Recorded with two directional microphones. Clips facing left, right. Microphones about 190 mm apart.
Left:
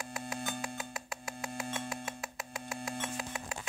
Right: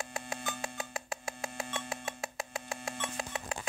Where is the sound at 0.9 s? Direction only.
25° right (ahead or behind).